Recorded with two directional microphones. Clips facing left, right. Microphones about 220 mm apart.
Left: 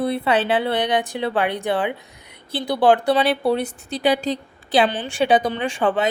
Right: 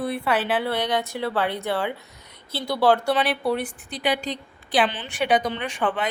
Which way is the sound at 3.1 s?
25° left (ahead or behind).